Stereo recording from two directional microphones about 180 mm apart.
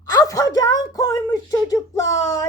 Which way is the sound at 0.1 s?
20° left (ahead or behind).